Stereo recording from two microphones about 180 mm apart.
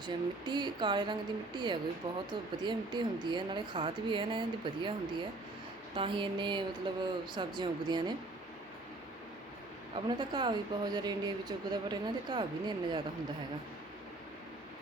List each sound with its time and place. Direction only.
0.0 s speech: 25° right (ahead or behind)
9.9 s speech: 25° right (ahead or behind)